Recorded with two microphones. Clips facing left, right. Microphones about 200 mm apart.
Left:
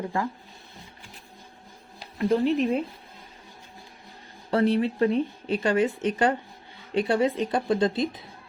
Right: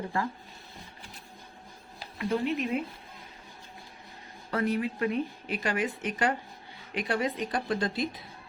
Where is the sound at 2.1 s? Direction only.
35° left (ahead or behind).